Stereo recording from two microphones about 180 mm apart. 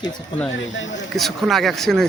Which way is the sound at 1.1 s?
Centre (ahead or behind).